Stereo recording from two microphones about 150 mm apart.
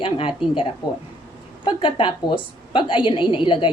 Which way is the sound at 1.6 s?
35° left (ahead or behind).